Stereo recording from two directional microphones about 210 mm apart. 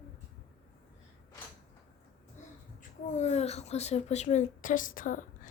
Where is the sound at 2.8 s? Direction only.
35° left (ahead or behind).